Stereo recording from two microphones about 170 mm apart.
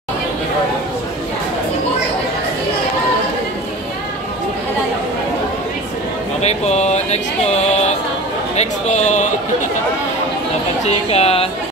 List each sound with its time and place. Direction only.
6.4 s a sound: 40° left (ahead or behind)
8.5 s a man's voice: 40° left (ahead or behind)
10.9 s a woman's voice: 35° left (ahead or behind)